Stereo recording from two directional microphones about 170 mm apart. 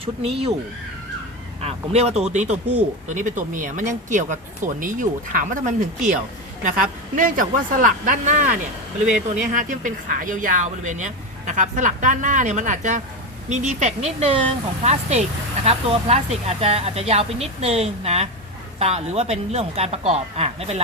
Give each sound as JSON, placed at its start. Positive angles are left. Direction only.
{"t": 0.0, "sound": "speech", "side_deg": -35}
{"t": 1.6, "sound": "speech", "side_deg": -40}
{"t": 7.2, "sound": "speech", "side_deg": -50}